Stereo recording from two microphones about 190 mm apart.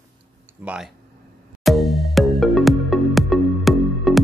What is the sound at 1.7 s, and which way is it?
Music, centre (ahead or behind).